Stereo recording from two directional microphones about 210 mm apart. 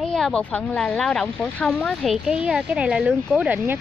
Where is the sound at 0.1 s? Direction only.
5° left (ahead or behind).